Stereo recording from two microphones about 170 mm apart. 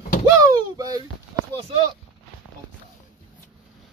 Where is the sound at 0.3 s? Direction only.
20° right (ahead or behind).